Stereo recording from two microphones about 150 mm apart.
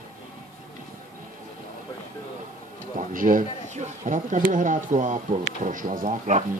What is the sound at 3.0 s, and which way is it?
Speech, 60° right (ahead or behind).